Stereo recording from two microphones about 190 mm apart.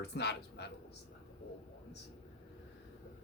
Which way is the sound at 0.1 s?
60° left (ahead or behind).